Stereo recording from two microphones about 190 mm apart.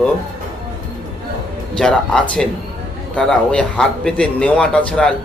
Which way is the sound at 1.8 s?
5° left (ahead or behind).